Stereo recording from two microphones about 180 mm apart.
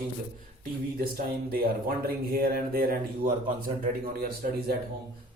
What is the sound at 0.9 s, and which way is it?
Speech, 55° right (ahead or behind).